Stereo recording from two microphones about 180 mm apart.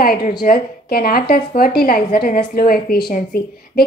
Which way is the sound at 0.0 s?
55° left (ahead or behind).